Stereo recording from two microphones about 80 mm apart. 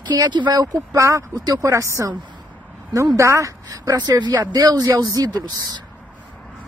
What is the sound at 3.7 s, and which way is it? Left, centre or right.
Speech, right.